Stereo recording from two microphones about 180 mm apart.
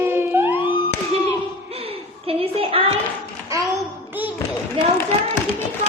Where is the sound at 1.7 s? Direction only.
35° right (ahead or behind).